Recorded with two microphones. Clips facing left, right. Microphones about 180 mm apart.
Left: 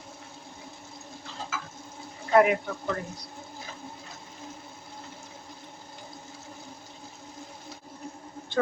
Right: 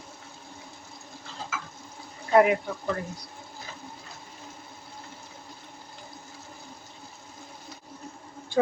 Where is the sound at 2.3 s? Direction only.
Centre (ahead or behind).